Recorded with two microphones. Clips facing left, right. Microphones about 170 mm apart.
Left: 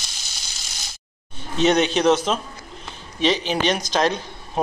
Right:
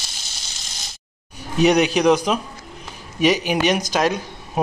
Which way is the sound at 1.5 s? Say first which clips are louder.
Right 2 dB; 15° right (ahead or behind).